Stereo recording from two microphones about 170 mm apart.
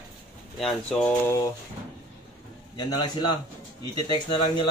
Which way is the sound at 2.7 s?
25° left (ahead or behind).